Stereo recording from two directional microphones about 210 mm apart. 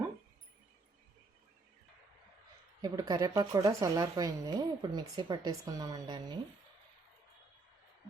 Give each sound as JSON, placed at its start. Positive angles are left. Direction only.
{"t": 2.8, "sound": "speech", "side_deg": -20}